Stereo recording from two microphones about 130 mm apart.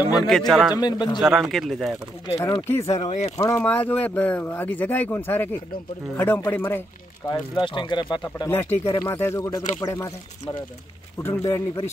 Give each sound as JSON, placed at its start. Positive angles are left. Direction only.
{"t": 0.3, "sound": "speech", "side_deg": 0}
{"t": 0.7, "sound": "speech", "side_deg": 35}
{"t": 1.2, "sound": "speech", "side_deg": 0}
{"t": 2.7, "sound": "speech", "side_deg": 25}
{"t": 3.1, "sound": "speech", "side_deg": 55}
{"t": 3.3, "sound": "speech", "side_deg": 20}
{"t": 7.2, "sound": "speech", "side_deg": 35}
{"t": 8.5, "sound": "speech", "side_deg": 15}
{"t": 9.4, "sound": "speech", "side_deg": 30}
{"t": 11.2, "sound": "speech", "side_deg": 25}